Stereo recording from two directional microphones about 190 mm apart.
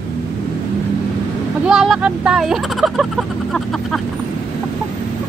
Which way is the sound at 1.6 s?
Centre (ahead or behind).